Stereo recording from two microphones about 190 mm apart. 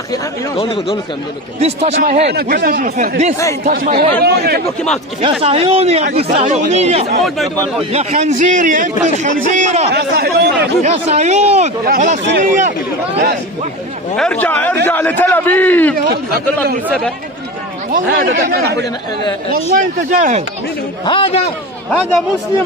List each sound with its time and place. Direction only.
1.6 s a man's voice: 35° right (ahead or behind); by 4.6 s 55° right (ahead or behind)
5.4 s a man's voice: 30° right (ahead or behind)
7.2 s speech: centre (ahead or behind)
7.9 s a man's voice: 35° right (ahead or behind)
9.8 s speech: 55° right (ahead or behind)
10.8 s a man's voice: 35° right (ahead or behind)
11.8 s speech: 45° right (ahead or behind)
14.1 s a man's voice: 5° left (ahead or behind)
17.9 s speech: 50° right (ahead or behind)
21.0 s a man's voice: 25° left (ahead or behind)